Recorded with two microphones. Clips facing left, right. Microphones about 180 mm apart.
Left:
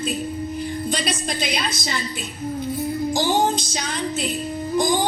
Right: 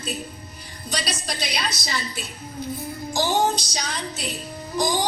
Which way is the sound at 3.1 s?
55° left (ahead or behind).